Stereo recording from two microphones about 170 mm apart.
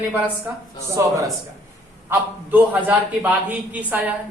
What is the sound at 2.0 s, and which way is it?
A man's voice, 10° right (ahead or behind).